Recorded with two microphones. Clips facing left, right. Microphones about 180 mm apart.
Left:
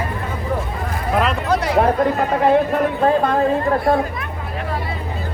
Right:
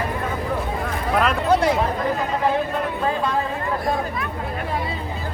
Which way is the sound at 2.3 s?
60° left (ahead or behind).